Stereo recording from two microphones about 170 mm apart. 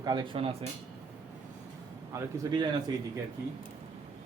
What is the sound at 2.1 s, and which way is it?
Speech, 25° right (ahead or behind).